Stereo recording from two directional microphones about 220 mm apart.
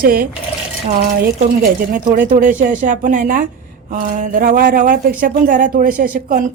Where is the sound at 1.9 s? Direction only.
40° right (ahead or behind).